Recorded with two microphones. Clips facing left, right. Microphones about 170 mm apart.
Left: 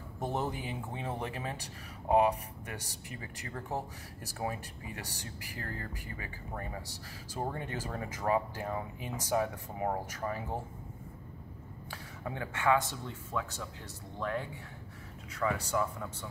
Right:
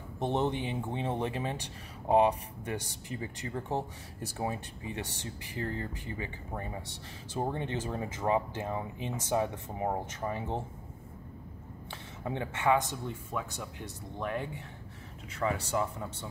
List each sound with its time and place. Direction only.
0.2 s speech: 25° right (ahead or behind)
11.9 s a man's voice: 25° right (ahead or behind)